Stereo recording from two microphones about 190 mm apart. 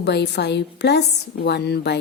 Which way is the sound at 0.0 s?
60° left (ahead or behind).